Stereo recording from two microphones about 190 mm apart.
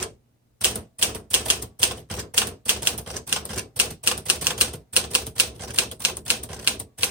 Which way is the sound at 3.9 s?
5° right (ahead or behind).